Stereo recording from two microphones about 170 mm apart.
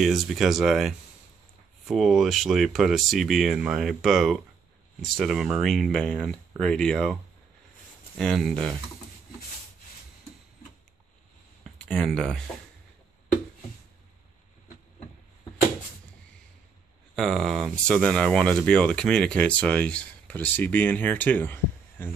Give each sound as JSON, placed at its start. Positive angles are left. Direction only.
{"t": 0.0, "sound": "speech", "side_deg": 0}
{"t": 8.2, "sound": "speech", "side_deg": 5}
{"t": 11.8, "sound": "speech", "side_deg": 5}
{"t": 17.1, "sound": "speech", "side_deg": 0}